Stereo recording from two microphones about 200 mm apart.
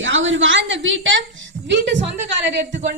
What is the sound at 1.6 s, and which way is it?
Music, 65° right (ahead or behind).